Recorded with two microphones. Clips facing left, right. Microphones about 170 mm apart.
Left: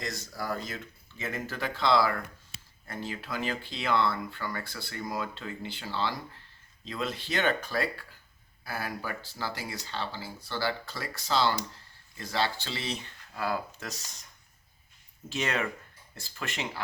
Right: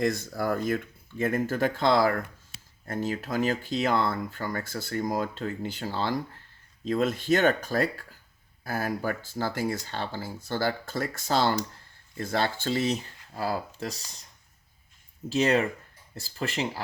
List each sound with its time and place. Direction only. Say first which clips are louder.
0.0 s speech: right 9 dB; 55° right (ahead or behind); by 13.9 s 35° right (ahead or behind)
15.3 s speech: right 8 dB; 35° right (ahead or behind)